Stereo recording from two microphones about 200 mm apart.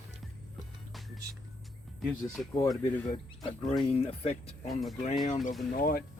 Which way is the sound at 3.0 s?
25° left (ahead or behind).